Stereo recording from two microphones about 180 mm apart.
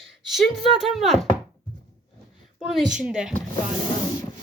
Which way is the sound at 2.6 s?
Centre (ahead or behind).